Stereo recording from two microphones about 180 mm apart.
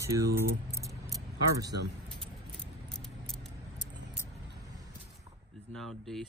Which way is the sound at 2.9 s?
Centre (ahead or behind).